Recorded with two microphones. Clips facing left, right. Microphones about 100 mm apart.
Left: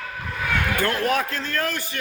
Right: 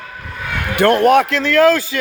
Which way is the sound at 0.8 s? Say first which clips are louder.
Right 14 dB; 70° right (ahead or behind).